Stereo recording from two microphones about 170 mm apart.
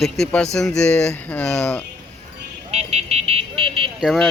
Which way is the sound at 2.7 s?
40° right (ahead or behind).